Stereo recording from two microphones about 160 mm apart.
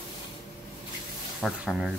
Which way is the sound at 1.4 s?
Centre (ahead or behind).